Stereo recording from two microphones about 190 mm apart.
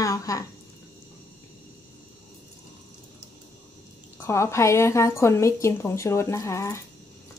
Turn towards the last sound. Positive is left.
turn(degrees=15)  # may be behind; listen again after turning